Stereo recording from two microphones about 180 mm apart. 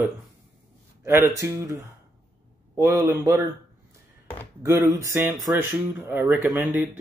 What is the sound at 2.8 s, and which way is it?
Speech, 15° right (ahead or behind).